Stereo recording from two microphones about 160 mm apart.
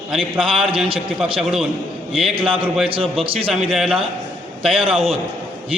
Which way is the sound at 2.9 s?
35° right (ahead or behind).